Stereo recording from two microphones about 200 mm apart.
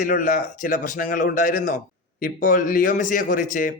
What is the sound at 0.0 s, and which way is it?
Speech, 45° left (ahead or behind).